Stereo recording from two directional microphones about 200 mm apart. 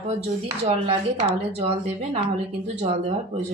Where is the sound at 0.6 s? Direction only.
30° right (ahead or behind).